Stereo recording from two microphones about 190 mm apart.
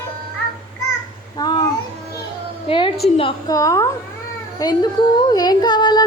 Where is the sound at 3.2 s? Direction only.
25° left (ahead or behind).